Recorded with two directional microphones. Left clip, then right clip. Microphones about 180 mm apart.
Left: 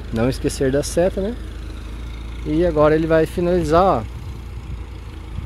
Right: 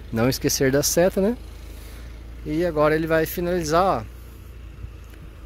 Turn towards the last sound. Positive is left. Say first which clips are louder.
# left 5 dB
turn(degrees=0)  # may be behind; listen again after turning